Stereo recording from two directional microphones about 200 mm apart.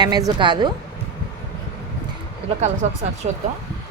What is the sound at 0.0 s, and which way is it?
Speech, 20° right (ahead or behind).